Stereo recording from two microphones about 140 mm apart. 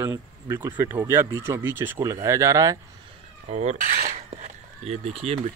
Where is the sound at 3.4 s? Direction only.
50° right (ahead or behind).